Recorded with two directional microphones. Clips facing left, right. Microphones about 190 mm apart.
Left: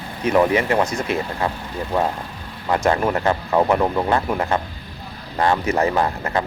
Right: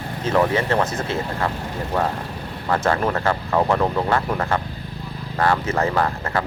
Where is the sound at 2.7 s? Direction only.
15° left (ahead or behind).